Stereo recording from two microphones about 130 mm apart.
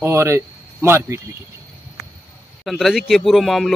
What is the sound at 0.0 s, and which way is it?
Speech, 20° right (ahead or behind).